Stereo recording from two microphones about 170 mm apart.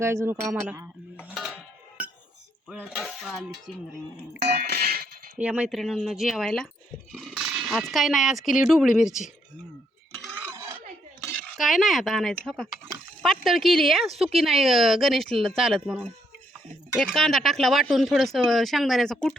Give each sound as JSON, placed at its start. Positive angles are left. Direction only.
{"t": 0.0, "sound": "speech", "side_deg": -15}
{"t": 1.3, "sound": "a sound", "side_deg": 0}
{"t": 2.9, "sound": "cutlery", "side_deg": 0}
{"t": 4.4, "sound": "music", "side_deg": -70}
{"t": 5.4, "sound": "speech", "side_deg": -5}
{"t": 10.2, "sound": "stir", "side_deg": 0}
{"t": 10.4, "sound": "dishes", "side_deg": -15}
{"t": 11.5, "sound": "speech", "side_deg": 0}